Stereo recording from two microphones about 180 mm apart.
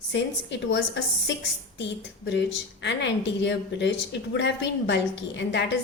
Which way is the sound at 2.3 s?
80° left.